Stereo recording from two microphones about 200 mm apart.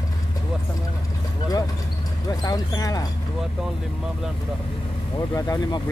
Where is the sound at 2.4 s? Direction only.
20° left (ahead or behind).